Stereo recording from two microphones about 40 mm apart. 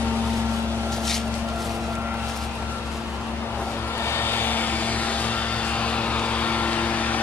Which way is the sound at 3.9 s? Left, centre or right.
Left.